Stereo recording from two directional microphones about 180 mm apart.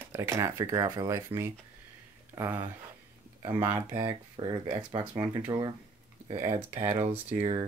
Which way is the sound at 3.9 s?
25° right (ahead or behind).